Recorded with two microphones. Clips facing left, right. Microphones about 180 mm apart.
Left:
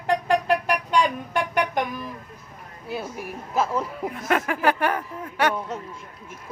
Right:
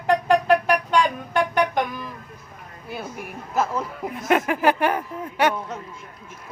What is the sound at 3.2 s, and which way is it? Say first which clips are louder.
Speech: right 1 dB; centre (ahead or behind).